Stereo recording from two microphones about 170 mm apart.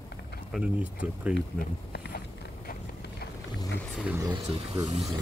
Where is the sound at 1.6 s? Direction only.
70° left (ahead or behind).